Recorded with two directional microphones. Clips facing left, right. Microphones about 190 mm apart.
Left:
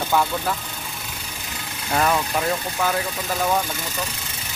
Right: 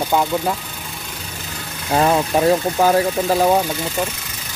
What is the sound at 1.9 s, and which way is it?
Speech, 30° right (ahead or behind).